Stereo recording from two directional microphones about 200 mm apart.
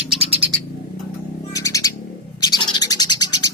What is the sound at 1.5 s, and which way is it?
Bird, 15° left (ahead or behind).